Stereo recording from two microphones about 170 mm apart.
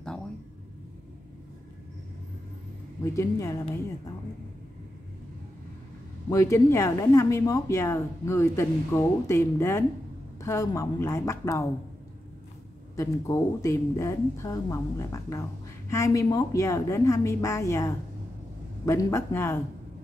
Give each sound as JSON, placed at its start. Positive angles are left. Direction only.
{"t": 3.2, "sound": "a woman's voice", "side_deg": 20}
{"t": 6.2, "sound": "speech", "side_deg": 20}
{"t": 12.9, "sound": "speech", "side_deg": 20}